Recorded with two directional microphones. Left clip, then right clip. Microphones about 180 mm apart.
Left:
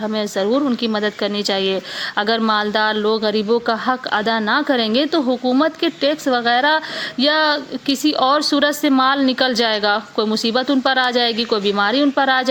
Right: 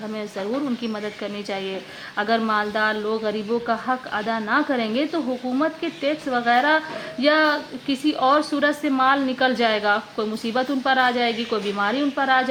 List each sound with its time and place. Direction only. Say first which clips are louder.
0.1 s speech: left 8 dB; 30° left (ahead or behind)